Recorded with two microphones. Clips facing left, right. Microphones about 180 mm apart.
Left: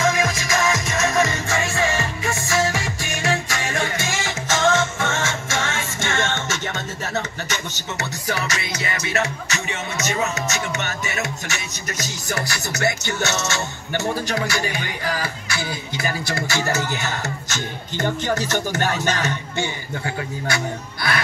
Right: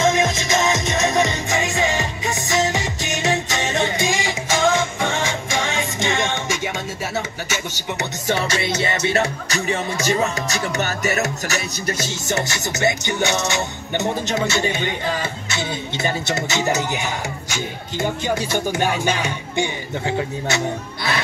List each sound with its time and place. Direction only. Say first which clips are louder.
0.0 s music: right 3 dB; 20° right (ahead or behind)
7.2 s speech: left 1 dB; 10° right (ahead or behind)
8.3 s music: right 6 dB; 30° right (ahead or behind)
12.3 s music: right 3 dB; 25° right (ahead or behind)